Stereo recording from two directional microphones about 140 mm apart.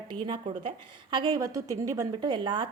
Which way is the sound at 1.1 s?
30° right (ahead or behind).